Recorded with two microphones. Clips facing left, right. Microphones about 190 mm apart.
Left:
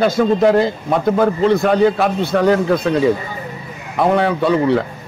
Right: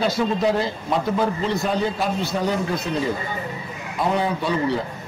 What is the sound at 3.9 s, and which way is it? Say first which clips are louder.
Speech: left 7 dB; 65° left (ahead or behind).